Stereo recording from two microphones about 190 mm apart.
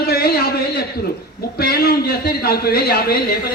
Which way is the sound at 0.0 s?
55° left (ahead or behind).